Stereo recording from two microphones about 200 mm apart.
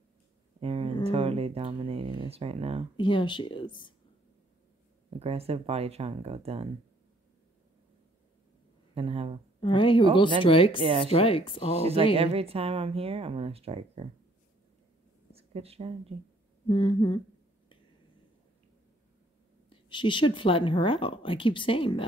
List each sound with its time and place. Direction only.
0.6 s a sound: 30° right (ahead or behind)
1.0 s speech: 30° right (ahead or behind)
3.0 s a woman's voice: 25° left (ahead or behind)
5.2 s speech: 30° right (ahead or behind)
8.9 s speech: 30° right (ahead or behind)
9.6 s a woman's voice: 25° left (ahead or behind)
10.8 s speech: 25° right (ahead or behind)
11.1 s a woman's voice: 30° left (ahead or behind)
11.8 s speech: 30° right (ahead or behind)
15.3 s a sound: 30° right (ahead or behind)
16.6 s a woman's voice: 25° left (ahead or behind)
19.7 s a woman's voice: 25° left (ahead or behind)